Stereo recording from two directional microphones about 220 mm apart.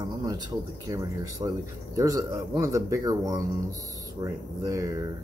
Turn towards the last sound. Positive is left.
turn(degrees=-15)  # may be behind; listen again after turning